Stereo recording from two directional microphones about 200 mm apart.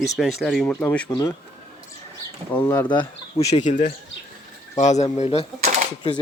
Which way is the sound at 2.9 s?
25° left (ahead or behind).